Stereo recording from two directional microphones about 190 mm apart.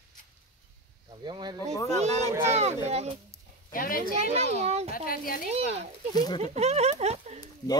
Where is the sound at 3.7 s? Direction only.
50° left (ahead or behind).